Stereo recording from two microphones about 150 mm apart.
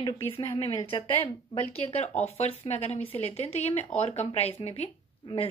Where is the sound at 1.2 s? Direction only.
35° left (ahead or behind).